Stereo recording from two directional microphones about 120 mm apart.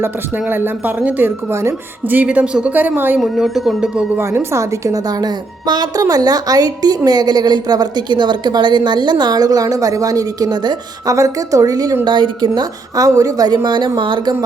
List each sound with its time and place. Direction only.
0.0 s speech: 20° right (ahead or behind)
3.2 s speech: centre (ahead or behind)
4.2 s a woman's voice: 25° right (ahead or behind)
12.0 s a woman's voice: 40° right (ahead or behind)